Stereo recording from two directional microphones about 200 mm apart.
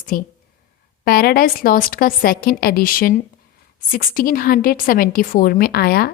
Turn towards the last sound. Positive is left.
turn(degrees=50)  # may be behind; listen again after turning